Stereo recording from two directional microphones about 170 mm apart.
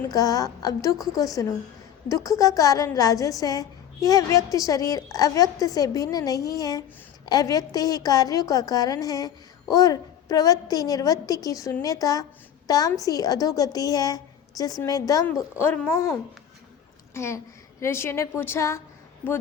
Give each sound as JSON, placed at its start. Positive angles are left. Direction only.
{"t": 0.1, "sound": "a woman's voice", "side_deg": 20}
{"t": 17.2, "sound": "a woman's voice", "side_deg": 15}